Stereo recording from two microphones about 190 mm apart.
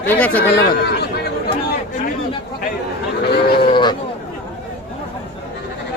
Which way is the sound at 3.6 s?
25° left (ahead or behind).